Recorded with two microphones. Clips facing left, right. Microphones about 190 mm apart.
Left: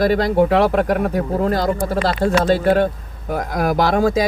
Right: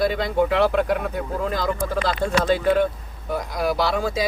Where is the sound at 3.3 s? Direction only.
55° left (ahead or behind).